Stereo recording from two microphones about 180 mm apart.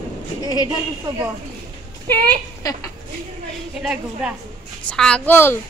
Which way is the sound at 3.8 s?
5° right (ahead or behind).